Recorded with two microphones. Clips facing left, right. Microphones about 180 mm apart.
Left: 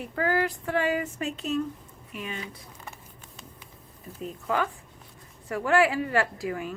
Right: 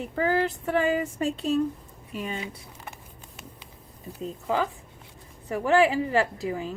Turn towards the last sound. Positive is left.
turn(degrees=-25)  # may be behind; listen again after turning